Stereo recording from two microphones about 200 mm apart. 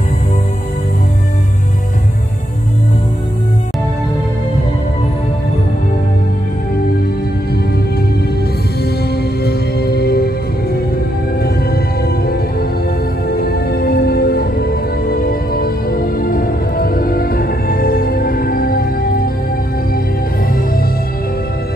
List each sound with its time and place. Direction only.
9.1 s music: 50° left (ahead or behind)